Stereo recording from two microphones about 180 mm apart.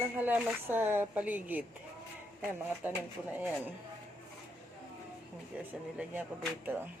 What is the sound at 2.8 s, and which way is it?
Speech, 10° right (ahead or behind).